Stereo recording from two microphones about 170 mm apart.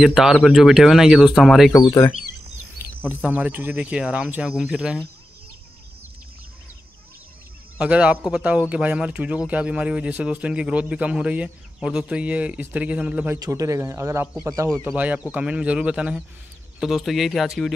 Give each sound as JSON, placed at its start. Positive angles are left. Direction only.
{"t": 0.0, "sound": "speech", "side_deg": 0}
{"t": 1.7, "sound": "speech", "side_deg": 20}
{"t": 3.0, "sound": "a man's voice", "side_deg": -10}
{"t": 7.8, "sound": "a man's voice", "side_deg": -5}
{"t": 14.9, "sound": "a man's voice", "side_deg": -10}